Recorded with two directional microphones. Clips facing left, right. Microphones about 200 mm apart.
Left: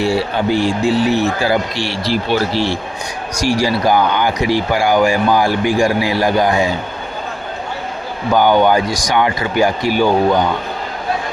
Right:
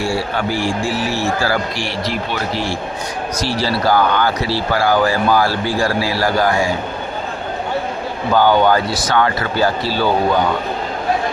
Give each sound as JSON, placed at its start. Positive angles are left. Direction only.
{"t": 0.0, "sound": "a man's voice", "side_deg": 20}
{"t": 2.0, "sound": "a man's voice", "side_deg": 30}
{"t": 3.3, "sound": "speech", "side_deg": 10}
{"t": 8.3, "sound": "speech", "side_deg": 15}